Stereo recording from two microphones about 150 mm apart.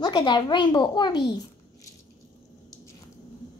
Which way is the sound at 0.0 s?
30° left (ahead or behind).